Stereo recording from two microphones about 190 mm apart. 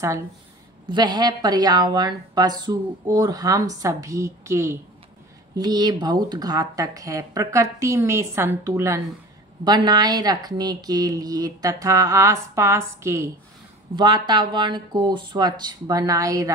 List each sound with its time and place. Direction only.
0.8 s a woman's voice: 25° right (ahead or behind)